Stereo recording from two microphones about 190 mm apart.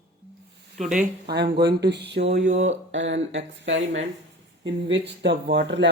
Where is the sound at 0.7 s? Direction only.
40° right (ahead or behind).